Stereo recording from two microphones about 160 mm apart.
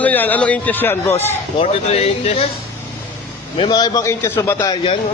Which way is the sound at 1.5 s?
40° left (ahead or behind).